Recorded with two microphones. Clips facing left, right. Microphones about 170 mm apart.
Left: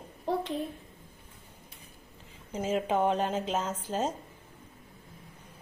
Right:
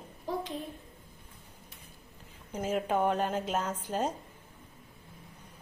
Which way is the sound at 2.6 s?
5° right (ahead or behind).